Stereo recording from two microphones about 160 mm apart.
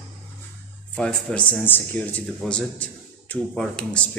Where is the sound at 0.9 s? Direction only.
5° left (ahead or behind).